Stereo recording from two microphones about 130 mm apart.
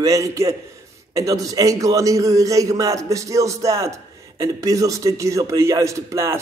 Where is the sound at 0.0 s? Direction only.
25° right (ahead or behind).